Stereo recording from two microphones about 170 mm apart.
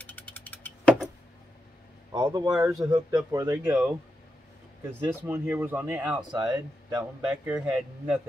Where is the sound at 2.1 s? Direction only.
25° right (ahead or behind); by 6.2 s 10° right (ahead or behind).